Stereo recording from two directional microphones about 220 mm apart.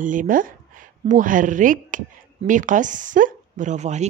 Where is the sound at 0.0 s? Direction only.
35° right (ahead or behind).